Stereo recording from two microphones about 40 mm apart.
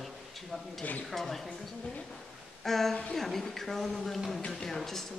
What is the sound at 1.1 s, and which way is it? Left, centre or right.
Speech, centre.